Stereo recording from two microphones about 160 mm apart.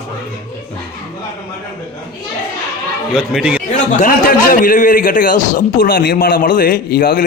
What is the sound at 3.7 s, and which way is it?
A man's voice, 55° left (ahead or behind).